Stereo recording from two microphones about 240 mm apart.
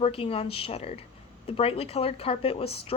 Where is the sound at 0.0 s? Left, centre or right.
Left.